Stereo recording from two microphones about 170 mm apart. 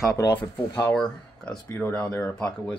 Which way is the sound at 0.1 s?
25° left (ahead or behind).